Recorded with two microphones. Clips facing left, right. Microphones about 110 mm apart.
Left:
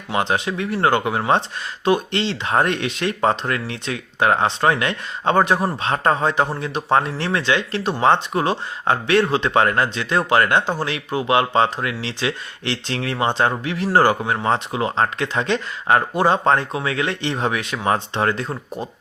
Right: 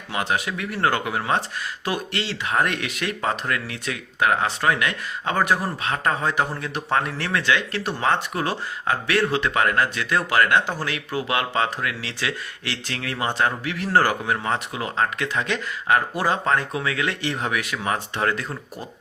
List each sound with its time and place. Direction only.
0.1 s speech: 25° left (ahead or behind)